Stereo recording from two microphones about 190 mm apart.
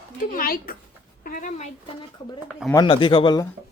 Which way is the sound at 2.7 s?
25° left (ahead or behind).